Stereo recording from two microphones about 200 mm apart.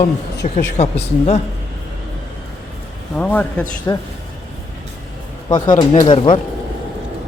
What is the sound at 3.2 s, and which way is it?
Speech, 5° left (ahead or behind).